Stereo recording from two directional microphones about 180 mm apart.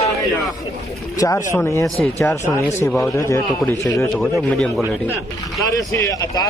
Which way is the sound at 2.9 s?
5° left (ahead or behind).